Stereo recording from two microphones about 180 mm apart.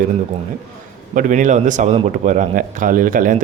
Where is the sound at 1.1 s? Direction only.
45° right (ahead or behind).